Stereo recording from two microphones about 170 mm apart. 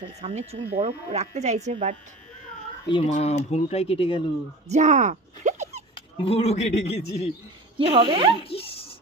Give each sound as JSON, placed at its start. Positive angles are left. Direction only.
{"t": 0.2, "sound": "speech", "side_deg": -40}
{"t": 2.9, "sound": "speech", "side_deg": 35}
{"t": 4.6, "sound": "a sound", "side_deg": -45}
{"t": 6.1, "sound": "speech", "side_deg": 35}
{"t": 7.7, "sound": "speech", "side_deg": -30}
{"t": 8.4, "sound": "speech", "side_deg": 35}